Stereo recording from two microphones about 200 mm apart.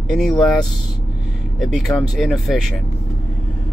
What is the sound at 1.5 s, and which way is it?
Speech, centre (ahead or behind).